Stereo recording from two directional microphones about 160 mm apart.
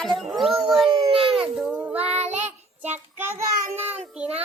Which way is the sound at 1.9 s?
40° right (ahead or behind).